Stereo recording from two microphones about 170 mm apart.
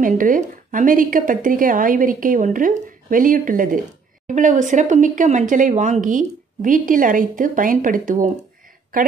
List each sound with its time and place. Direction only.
0.0 s a woman's voice: 50° right (ahead or behind)